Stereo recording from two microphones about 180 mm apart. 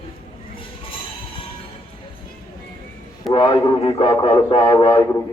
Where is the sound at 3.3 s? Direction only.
30° left (ahead or behind).